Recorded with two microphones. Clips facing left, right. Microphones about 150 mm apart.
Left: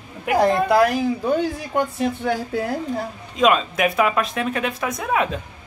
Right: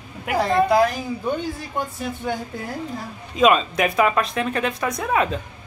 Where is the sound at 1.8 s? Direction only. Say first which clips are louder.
Left 8 dB; 80° left.